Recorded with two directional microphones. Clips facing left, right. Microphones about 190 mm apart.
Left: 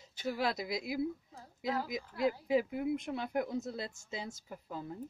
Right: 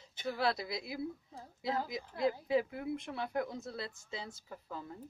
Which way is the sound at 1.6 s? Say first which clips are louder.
Left 1 dB; 25° right (ahead or behind).